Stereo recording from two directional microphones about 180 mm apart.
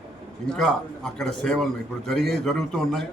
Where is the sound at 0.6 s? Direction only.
Centre (ahead or behind).